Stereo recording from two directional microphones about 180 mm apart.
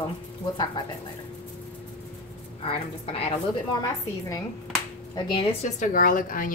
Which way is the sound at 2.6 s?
30° left (ahead or behind).